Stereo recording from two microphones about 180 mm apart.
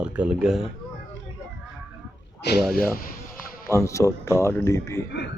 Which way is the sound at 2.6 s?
Centre (ahead or behind).